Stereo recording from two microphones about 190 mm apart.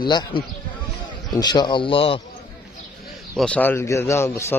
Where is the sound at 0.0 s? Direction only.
25° left (ahead or behind).